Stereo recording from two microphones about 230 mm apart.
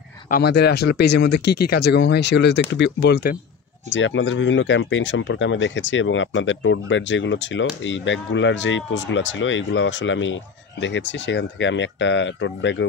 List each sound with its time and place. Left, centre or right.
0.3 s speech: left
3.9 s speech: left